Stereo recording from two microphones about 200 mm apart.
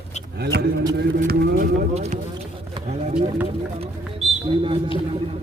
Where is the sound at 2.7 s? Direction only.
35° right (ahead or behind).